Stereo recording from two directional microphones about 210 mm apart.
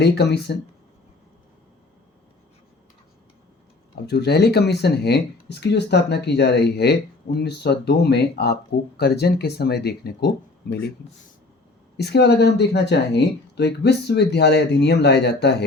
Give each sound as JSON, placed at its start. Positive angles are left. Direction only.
{"t": 0.0, "sound": "speech", "side_deg": 55}
{"t": 4.0, "sound": "speech", "side_deg": 50}
{"t": 11.9, "sound": "speech", "side_deg": 50}